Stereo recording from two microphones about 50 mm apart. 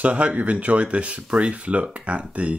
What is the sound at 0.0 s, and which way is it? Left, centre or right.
Speech, right.